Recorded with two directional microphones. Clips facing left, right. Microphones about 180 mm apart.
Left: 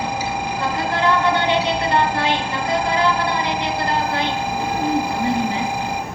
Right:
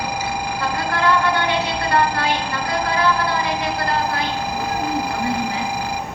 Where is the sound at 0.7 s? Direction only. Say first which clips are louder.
Even; 20° left (ahead or behind).